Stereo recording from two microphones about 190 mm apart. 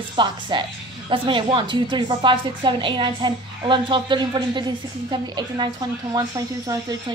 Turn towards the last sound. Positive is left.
turn(degrees=-20)  # may be behind; listen again after turning